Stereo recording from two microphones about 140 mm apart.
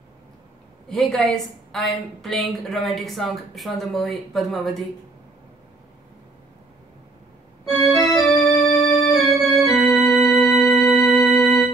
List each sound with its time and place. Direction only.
0.8 s a woman's voice: centre (ahead or behind)
7.7 s organ: centre (ahead or behind)
8.2 s music: 30° left (ahead or behind)
9.1 s organ: centre (ahead or behind)
10.0 s music: centre (ahead or behind)